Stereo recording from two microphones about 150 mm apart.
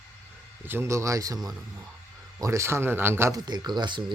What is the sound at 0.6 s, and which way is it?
Speech, 15° right (ahead or behind).